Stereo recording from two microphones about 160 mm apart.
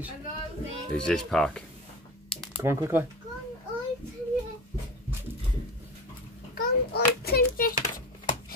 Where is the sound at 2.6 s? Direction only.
15° right (ahead or behind).